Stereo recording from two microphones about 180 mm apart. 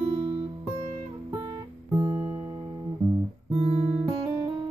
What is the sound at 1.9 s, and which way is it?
Music, 15° right (ahead or behind).